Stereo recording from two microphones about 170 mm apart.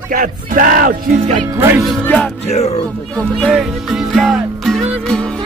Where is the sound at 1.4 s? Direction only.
15° right (ahead or behind).